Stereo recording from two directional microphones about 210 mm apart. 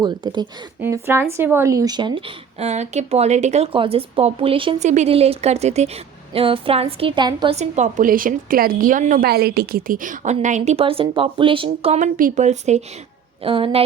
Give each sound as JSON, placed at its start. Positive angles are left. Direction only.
{"t": 0.0, "sound": "speech", "side_deg": -20}
{"t": 7.5, "sound": "a woman's voice", "side_deg": -35}